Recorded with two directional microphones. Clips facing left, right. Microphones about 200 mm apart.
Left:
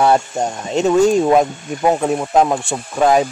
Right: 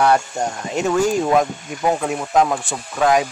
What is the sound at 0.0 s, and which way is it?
Speech, 25° left (ahead or behind).